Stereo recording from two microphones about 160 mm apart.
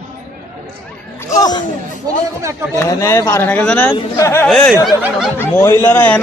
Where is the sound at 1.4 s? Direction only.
25° left (ahead or behind).